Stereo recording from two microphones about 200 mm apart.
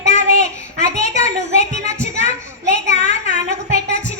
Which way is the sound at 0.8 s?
35° left (ahead or behind).